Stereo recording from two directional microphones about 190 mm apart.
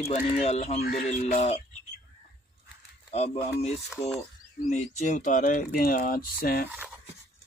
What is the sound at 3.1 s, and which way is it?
Speech, 35° left (ahead or behind).